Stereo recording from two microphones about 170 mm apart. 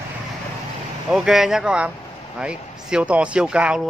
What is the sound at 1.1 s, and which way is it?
Speech, 5° right (ahead or behind).